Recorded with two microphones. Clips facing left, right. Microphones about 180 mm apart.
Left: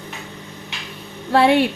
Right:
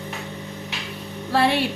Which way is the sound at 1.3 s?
55° left (ahead or behind).